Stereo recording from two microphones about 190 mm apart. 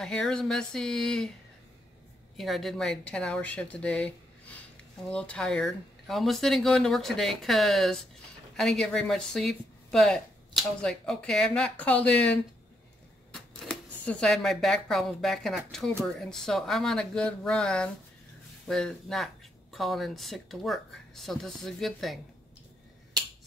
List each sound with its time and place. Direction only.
0.0 s speech: 5° left (ahead or behind)
2.3 s speech: centre (ahead or behind)